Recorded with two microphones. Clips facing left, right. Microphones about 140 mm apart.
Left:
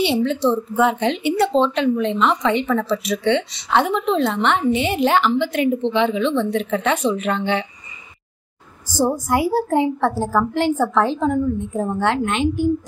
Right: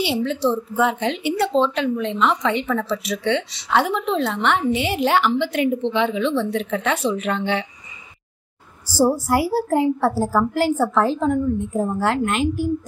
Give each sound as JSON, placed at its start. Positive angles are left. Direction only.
{"t": 0.0, "sound": "speech", "side_deg": -5}
{"t": 6.9, "sound": "speech", "side_deg": 15}
{"t": 7.2, "sound": "speech", "side_deg": -10}
{"t": 8.9, "sound": "speech", "side_deg": -5}